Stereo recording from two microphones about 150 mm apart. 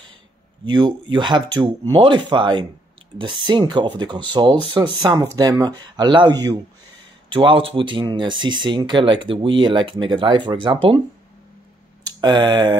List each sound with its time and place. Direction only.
0.7 s speech: 30° right (ahead or behind)
12.2 s speech: 30° right (ahead or behind)